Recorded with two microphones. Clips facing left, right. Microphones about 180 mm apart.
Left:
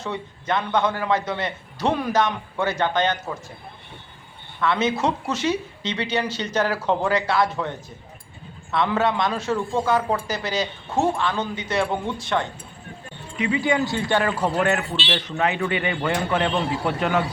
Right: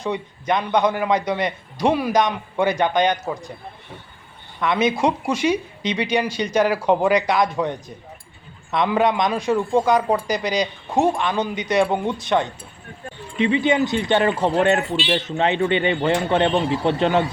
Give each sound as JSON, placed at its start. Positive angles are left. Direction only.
{"t": 0.0, "sound": "speech", "side_deg": -15}
{"t": 4.6, "sound": "a man's voice", "side_deg": -15}